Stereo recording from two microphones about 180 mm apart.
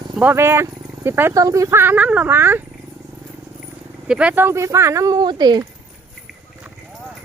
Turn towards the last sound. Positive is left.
turn(degrees=-25)  # may be behind; listen again after turning